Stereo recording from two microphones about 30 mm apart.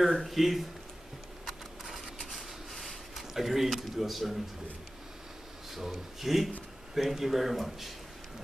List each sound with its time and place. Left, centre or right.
0.0 s speech: centre
2.7 s speech: centre
5.8 s speech: centre